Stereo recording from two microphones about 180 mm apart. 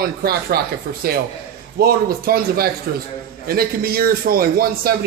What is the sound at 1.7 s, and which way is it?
A man's voice, 55° right (ahead or behind).